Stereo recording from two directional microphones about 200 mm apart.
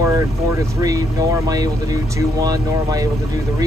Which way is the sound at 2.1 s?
20° right (ahead or behind).